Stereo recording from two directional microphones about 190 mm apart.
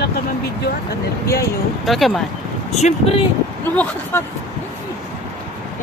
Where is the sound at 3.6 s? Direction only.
10° left (ahead or behind).